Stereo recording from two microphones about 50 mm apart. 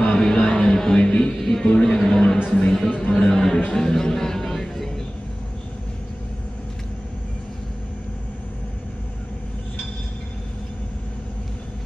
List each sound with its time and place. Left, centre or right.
0.2 s music: centre
1.4 s a sound: centre
2.5 s music: centre
2.9 s music: left